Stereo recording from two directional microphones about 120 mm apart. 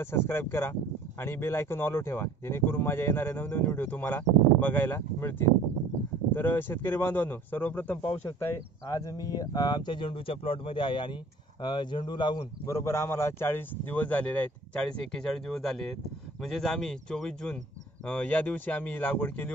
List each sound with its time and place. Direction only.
0.0 s speech: 20° left (ahead or behind)
6.3 s speech: 15° left (ahead or behind)
9.0 s speech: 30° left (ahead or behind)
12.6 s speech: 25° left (ahead or behind)